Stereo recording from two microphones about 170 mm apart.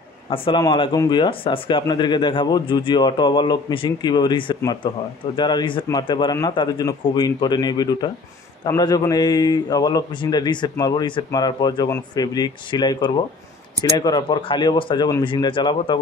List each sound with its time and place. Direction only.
0.3 s a man's voice: 25° left (ahead or behind)